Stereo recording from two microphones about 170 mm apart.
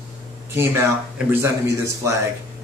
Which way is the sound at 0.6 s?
15° right (ahead or behind).